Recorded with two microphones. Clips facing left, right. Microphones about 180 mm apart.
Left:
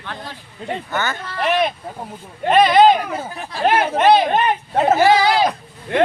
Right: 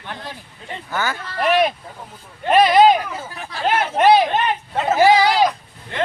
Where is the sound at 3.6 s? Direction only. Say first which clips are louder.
Left 3 dB; 55° left (ahead or behind).